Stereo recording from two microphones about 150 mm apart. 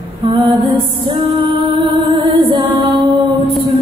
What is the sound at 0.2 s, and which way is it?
Music, 35° right (ahead or behind).